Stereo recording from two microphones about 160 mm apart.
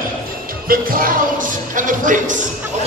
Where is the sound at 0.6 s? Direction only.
60° right (ahead or behind).